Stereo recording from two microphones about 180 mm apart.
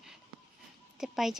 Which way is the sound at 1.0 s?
Centre (ahead or behind).